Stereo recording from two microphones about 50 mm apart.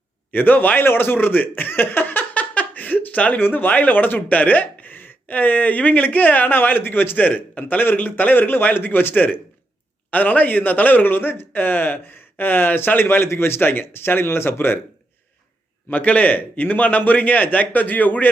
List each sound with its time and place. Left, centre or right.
0.3 s chuckle: left
3.3 s a man's voice: left
15.9 s speech: left